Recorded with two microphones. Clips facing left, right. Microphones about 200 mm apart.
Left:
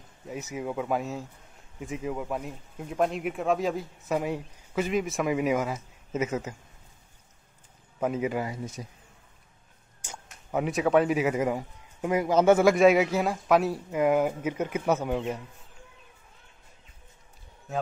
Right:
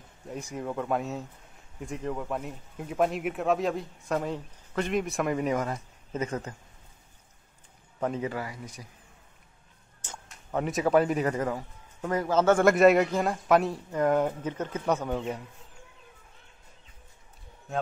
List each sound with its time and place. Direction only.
0.3 s speech: 5° left (ahead or behind)
8.0 s speech: 10° left (ahead or behind)
10.0 s speech: 10° left (ahead or behind)
12.6 s speech: centre (ahead or behind)